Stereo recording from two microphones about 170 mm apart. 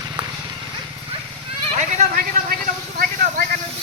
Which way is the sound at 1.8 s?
50° right (ahead or behind).